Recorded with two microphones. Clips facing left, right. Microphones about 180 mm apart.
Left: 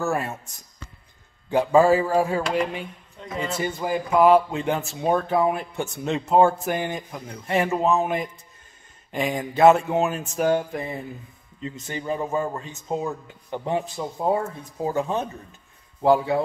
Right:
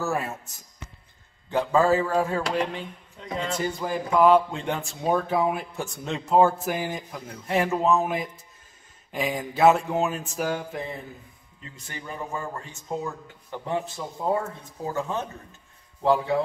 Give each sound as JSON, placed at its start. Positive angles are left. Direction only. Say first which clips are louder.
{"t": 0.0, "sound": "speech", "louder": "left 2 dB", "side_deg": 0}
{"t": 1.5, "sound": "speech", "louder": "left 4 dB", "side_deg": 10}
{"t": 11.6, "sound": "speech", "louder": "left 9 dB", "side_deg": 20}
{"t": 16.0, "sound": "speech", "louder": "left 3 dB", "side_deg": 5}